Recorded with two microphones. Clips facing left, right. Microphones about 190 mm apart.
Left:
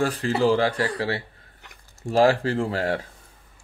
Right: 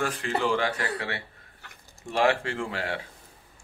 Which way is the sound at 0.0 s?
35° left (ahead or behind).